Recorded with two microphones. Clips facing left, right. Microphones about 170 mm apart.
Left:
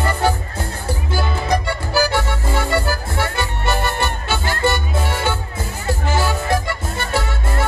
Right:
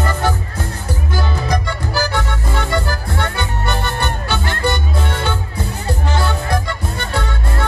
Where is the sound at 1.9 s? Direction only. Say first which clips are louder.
Left 3 dB; 10° left (ahead or behind).